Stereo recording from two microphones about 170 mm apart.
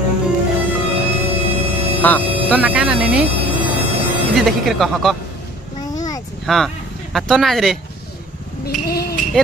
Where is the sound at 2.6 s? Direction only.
5° right (ahead or behind).